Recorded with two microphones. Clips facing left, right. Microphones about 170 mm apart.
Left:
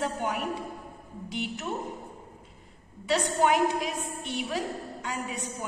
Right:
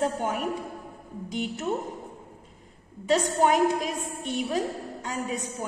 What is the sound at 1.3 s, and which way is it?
Speech, 45° right (ahead or behind).